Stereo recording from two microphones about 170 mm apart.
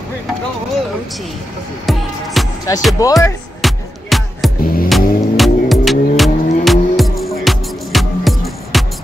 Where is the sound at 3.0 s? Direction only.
20° left (ahead or behind).